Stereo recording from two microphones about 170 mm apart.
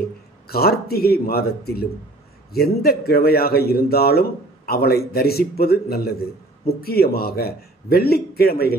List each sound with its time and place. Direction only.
0.5 s speech: 65° left (ahead or behind)